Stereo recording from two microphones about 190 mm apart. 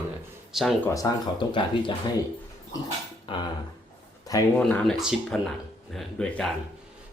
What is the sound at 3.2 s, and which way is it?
Speech, 25° left (ahead or behind).